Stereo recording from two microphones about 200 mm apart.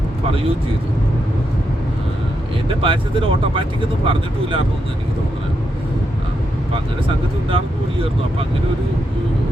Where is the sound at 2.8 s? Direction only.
25° right (ahead or behind).